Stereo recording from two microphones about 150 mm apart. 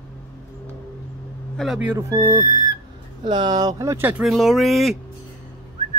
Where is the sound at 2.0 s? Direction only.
25° right (ahead or behind).